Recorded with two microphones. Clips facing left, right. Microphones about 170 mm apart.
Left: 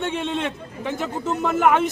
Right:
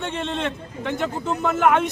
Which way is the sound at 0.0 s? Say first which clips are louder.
Left 1 dB; 10° left (ahead or behind).